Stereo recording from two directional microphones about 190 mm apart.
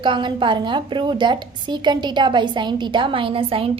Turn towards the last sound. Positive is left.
turn(degrees=-30)  # may be behind; listen again after turning